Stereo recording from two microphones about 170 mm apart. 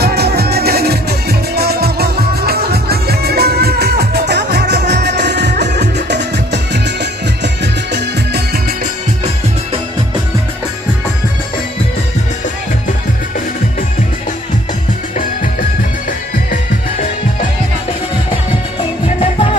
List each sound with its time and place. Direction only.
0.0 s music: 70° right (ahead or behind)
19.0 s music: 35° left (ahead or behind)